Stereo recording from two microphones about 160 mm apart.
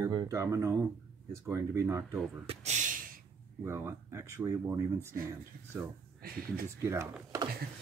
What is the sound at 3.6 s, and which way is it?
Speech, 15° right (ahead or behind).